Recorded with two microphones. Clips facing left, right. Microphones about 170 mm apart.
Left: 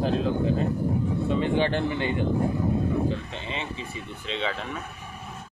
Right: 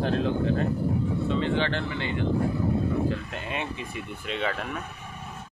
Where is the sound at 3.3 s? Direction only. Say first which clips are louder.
Right 1 dB; 15° right (ahead or behind).